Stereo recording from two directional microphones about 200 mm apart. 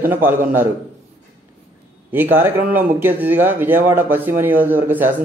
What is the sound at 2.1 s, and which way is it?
Speech, 10° right (ahead or behind).